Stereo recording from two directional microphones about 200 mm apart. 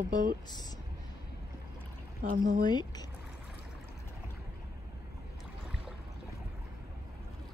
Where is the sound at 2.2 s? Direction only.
45° right (ahead or behind).